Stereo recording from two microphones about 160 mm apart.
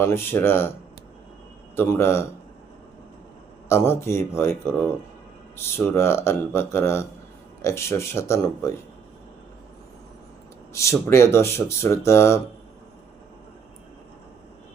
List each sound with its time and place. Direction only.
0.0 s speech: 15° left (ahead or behind)
1.7 s speech: 15° left (ahead or behind)
3.7 s speech: 15° left (ahead or behind)
10.7 s speech: 20° left (ahead or behind)